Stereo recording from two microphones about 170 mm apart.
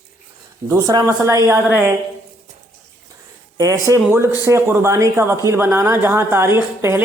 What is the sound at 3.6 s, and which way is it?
A woman's voice, 20° right (ahead or behind).